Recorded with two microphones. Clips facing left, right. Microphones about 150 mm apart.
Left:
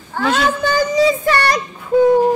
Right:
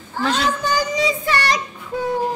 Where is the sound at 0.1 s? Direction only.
55° left (ahead or behind).